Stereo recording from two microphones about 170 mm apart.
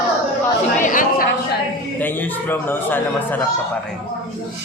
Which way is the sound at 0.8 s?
50° left (ahead or behind).